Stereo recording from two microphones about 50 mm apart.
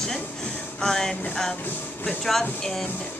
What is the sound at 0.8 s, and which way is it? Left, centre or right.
Speech, centre.